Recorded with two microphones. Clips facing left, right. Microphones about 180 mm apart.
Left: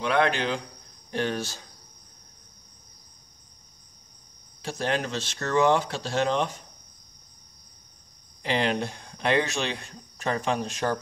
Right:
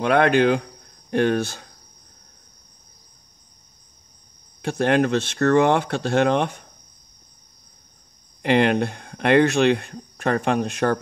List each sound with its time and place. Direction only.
0.0 s speech: 55° right (ahead or behind)
4.6 s speech: 55° right (ahead or behind)
8.4 s speech: 60° right (ahead or behind)